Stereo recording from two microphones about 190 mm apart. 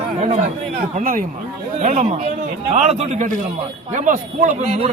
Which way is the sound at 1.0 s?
45° right (ahead or behind).